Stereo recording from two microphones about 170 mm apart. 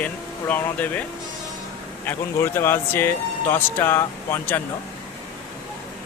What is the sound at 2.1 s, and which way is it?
Speech, 15° left (ahead or behind).